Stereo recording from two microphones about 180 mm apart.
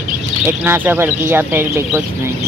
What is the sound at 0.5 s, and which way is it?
Speech, 10° right (ahead or behind).